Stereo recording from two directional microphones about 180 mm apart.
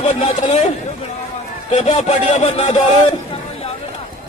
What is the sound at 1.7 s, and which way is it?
A man's voice, 35° left (ahead or behind).